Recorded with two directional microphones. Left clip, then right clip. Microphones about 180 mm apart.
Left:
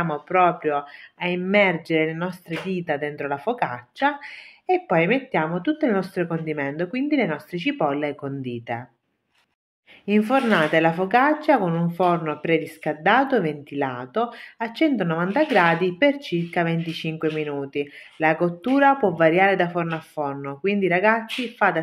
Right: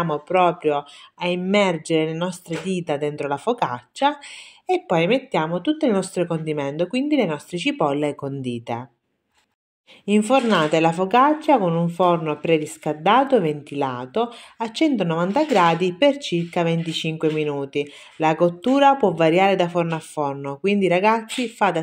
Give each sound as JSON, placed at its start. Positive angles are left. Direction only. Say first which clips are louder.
{"t": 0.0, "sound": "speech", "louder": "right 1 dB", "side_deg": -40}
{"t": 10.0, "sound": "speech", "louder": "right 2 dB", "side_deg": -35}